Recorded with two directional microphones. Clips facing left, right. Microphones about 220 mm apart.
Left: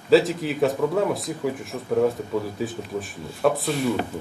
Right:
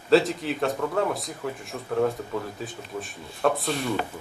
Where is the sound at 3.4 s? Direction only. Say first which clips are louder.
Left 3 dB; centre (ahead or behind).